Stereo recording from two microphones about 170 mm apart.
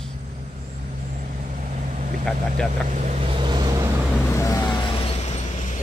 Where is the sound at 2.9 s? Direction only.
45° right (ahead or behind); by 3.9 s 20° right (ahead or behind).